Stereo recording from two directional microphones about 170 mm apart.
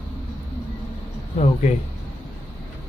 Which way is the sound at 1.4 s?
40° left (ahead or behind).